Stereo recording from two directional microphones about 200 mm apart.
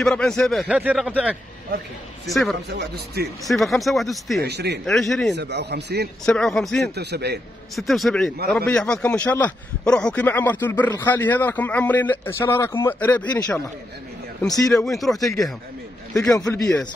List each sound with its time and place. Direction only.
0.0 s speech: 5° left (ahead or behind)
2.7 s speech: 55° right (ahead or behind)
3.4 s speech: centre (ahead or behind)
4.4 s speech: 55° right (ahead or behind)
4.8 s speech: centre (ahead or behind)
5.3 s speech: 60° right (ahead or behind)
6.2 s speech: centre (ahead or behind)
7.0 s speech: 55° right (ahead or behind)
7.7 s a man's voice: centre (ahead or behind)
14.7 s speech: centre (ahead or behind)
15.1 s a man's voice: 15° left (ahead or behind)
16.1 s a man's voice: 5° left (ahead or behind)
16.6 s a man's voice: 15° left (ahead or behind)